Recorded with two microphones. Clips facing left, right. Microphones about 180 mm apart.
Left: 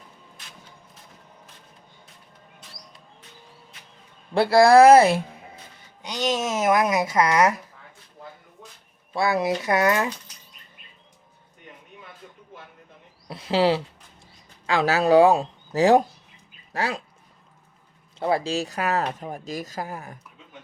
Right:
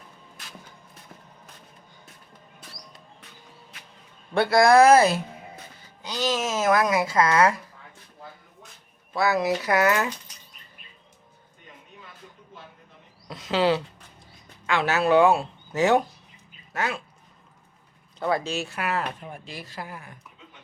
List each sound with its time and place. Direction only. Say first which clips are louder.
4.4 s speech: left 3 dB; 30° left (ahead or behind)
6.2 s speech: left 1 dB; 25° left (ahead or behind)
9.1 s speech: even; 25° left (ahead or behind)
13.2 s speech: left 2 dB; 30° left (ahead or behind)
18.2 s speech: left 2 dB; 30° left (ahead or behind)